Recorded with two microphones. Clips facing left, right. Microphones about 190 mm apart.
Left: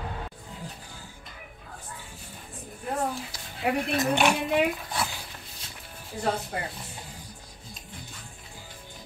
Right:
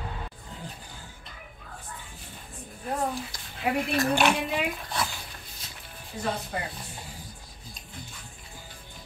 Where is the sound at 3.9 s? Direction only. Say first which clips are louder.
Even; 20° left (ahead or behind).